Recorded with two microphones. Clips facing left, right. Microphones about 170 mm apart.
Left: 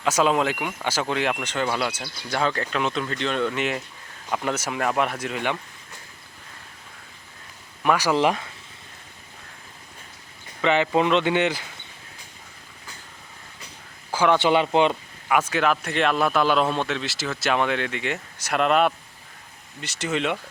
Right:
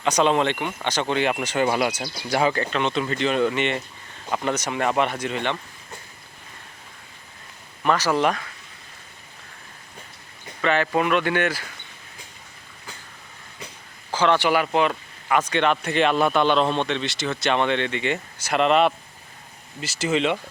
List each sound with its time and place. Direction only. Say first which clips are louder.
0.0 s a man's voice: right 1 dB; 5° left (ahead or behind)
1.4 s speech: right 4 dB; 10° right (ahead or behind)
2.6 s a man's voice: right 2 dB; centre (ahead or behind)
7.9 s speech: even; 15° left (ahead or behind)
10.6 s speech: left 1 dB; 15° left (ahead or behind)
14.1 s speech: left 1 dB; 10° left (ahead or behind)
15.3 s a man's voice: right 1 dB; 5° left (ahead or behind)